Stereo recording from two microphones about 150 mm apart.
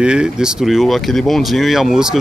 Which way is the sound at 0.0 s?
5° right (ahead or behind).